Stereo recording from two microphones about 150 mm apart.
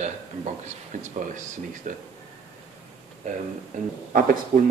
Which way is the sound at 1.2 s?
55° right (ahead or behind).